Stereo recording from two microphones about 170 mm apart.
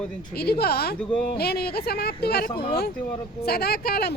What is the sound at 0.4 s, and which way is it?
Speech, 70° left (ahead or behind).